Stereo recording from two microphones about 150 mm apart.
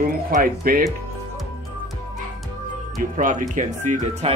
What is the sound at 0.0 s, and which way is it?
Speech, 75° right (ahead or behind).